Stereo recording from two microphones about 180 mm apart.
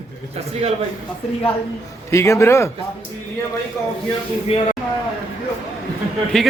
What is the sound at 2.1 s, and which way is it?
Speech, 15° left (ahead or behind).